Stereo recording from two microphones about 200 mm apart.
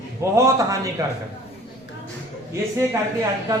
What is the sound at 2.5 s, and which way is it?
Speech, 15° right (ahead or behind).